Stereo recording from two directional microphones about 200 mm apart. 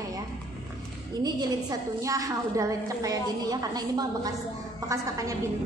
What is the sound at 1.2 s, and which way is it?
A woman's voice, 15° right (ahead or behind).